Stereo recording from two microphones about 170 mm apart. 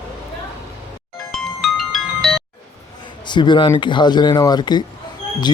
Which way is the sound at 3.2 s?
25° left (ahead or behind).